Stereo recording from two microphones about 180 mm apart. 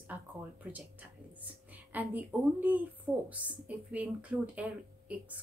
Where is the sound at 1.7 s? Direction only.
10° right (ahead or behind).